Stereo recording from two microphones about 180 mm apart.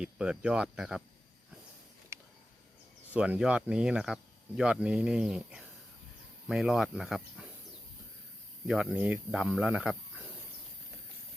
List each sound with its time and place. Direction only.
0.0 s speech: 5° right (ahead or behind)
3.1 s speech: 10° right (ahead or behind)
8.6 s speech: 5° right (ahead or behind)